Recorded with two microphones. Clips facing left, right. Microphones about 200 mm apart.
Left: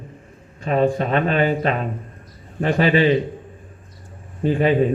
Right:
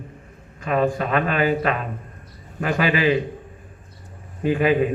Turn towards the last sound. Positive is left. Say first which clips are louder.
# left 1 dB
turn(degrees=30)  # may be behind; listen again after turning